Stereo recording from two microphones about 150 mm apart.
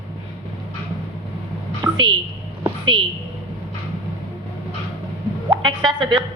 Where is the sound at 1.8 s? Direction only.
30° right (ahead or behind).